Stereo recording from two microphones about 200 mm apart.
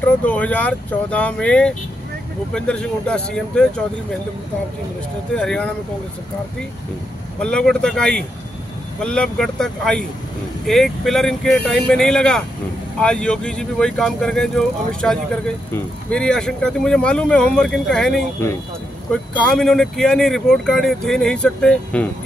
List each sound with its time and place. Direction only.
0.2 s speech: 5° left (ahead or behind)
5.3 s speech: 5° left (ahead or behind)
7.3 s speech: 5° left (ahead or behind)
19.4 s speech: centre (ahead or behind)